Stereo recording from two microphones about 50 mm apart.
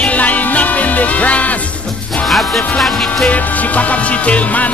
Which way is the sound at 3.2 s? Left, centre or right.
Left.